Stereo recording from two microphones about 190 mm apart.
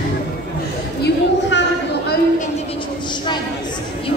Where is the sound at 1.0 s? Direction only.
70° left (ahead or behind).